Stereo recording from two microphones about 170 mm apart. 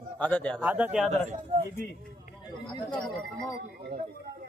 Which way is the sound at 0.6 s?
10° right (ahead or behind).